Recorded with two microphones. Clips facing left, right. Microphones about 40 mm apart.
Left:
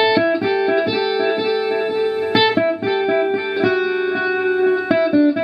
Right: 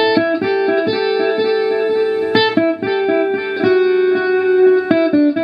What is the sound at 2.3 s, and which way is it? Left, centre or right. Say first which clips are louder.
Music: right 1 dB; centre.